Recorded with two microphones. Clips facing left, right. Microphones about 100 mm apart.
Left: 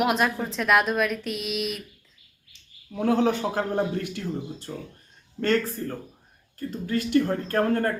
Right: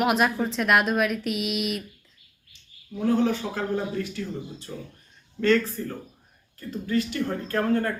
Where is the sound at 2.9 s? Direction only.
65° left (ahead or behind).